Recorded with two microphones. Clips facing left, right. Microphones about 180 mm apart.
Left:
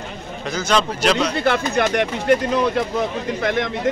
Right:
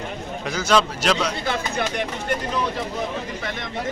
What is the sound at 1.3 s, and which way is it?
Speech, 65° left (ahead or behind).